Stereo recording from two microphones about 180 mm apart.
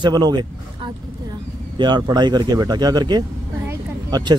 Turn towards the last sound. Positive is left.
turn(degrees=-25)  # may be behind; listen again after turning